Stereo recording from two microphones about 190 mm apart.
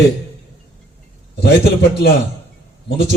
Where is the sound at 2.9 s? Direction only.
60° left (ahead or behind).